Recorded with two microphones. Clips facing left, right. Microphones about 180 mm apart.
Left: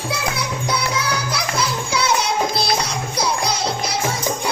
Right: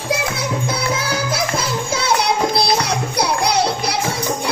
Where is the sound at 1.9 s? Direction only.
60° right (ahead or behind).